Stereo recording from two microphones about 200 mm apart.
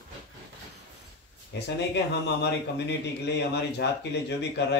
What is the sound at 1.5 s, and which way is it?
A man's voice, 55° left (ahead or behind).